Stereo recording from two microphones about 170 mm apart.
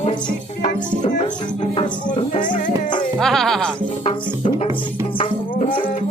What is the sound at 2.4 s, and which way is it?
Music, 50° left (ahead or behind).